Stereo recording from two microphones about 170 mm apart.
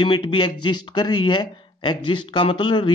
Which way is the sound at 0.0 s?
30° left (ahead or behind).